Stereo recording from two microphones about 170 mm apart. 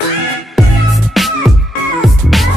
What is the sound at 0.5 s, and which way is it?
Music, centre (ahead or behind).